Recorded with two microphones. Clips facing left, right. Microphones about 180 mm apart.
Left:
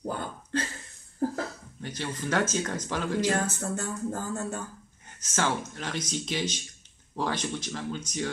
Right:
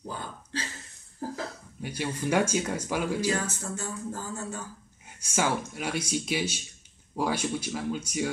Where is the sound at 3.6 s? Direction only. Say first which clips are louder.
Left 3 dB; 60° left (ahead or behind).